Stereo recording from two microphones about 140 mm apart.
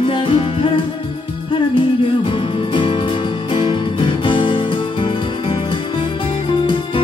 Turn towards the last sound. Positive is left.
turn(degrees=35)  # may be behind; listen again after turning